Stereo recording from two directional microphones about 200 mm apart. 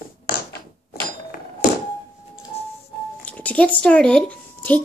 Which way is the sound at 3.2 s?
5° left (ahead or behind).